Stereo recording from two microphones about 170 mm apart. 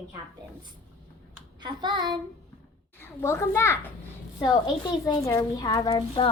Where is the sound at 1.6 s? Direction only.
25° right (ahead or behind).